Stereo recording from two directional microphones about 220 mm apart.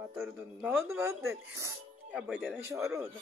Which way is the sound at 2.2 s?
Centre (ahead or behind).